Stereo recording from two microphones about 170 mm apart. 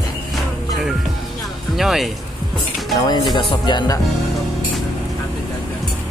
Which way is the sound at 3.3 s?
25° left (ahead or behind).